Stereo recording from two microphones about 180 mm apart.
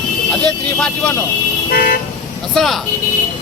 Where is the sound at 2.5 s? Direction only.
Centre (ahead or behind).